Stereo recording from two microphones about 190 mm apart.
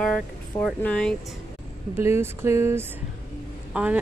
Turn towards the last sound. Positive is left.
turn(degrees=-5)  # may be behind; listen again after turning